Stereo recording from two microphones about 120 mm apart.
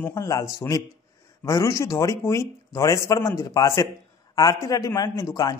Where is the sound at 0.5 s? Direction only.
30° left (ahead or behind).